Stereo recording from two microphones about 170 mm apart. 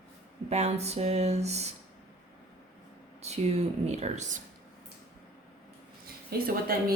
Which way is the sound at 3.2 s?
40° right (ahead or behind).